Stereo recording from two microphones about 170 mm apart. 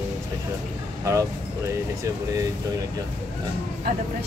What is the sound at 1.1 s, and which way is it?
Speech, 20° right (ahead or behind).